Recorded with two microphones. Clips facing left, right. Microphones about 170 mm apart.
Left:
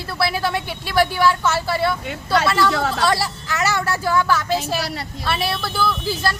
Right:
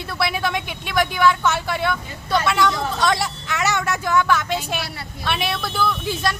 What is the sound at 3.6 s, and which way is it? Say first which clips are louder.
A woman's voice: left 1 dB; 5° left (ahead or behind).